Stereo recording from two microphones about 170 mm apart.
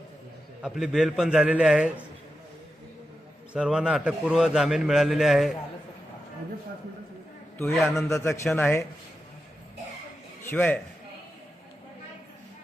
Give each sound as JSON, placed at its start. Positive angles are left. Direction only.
{"t": 0.6, "sound": "a man's voice", "side_deg": 0}
{"t": 3.5, "sound": "a man's voice", "side_deg": -5}
{"t": 7.6, "sound": "a man's voice", "side_deg": 0}
{"t": 8.1, "sound": "speech", "side_deg": 15}
{"t": 10.4, "sound": "a man's voice", "side_deg": 10}